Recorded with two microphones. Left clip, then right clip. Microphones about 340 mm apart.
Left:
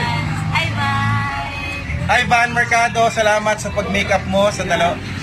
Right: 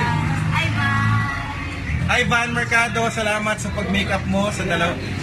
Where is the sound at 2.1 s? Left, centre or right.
Centre.